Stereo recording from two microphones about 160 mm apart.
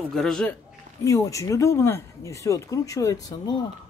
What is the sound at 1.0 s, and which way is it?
Speech, 20° left (ahead or behind).